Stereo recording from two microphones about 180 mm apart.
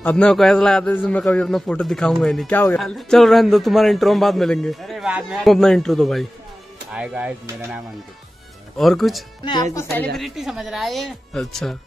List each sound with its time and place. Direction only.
0.0 s a man's voice: 5° left (ahead or behind)
8.7 s a man's voice: centre (ahead or behind)
9.4 s speech: 25° left (ahead or behind)
10.1 s a man's voice: centre (ahead or behind)